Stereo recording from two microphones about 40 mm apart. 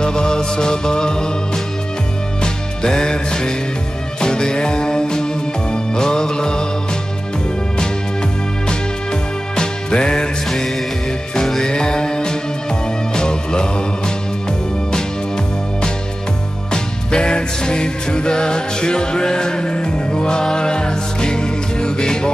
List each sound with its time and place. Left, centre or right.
0.0 s music: centre
8.6 s music: left
11.3 s music: centre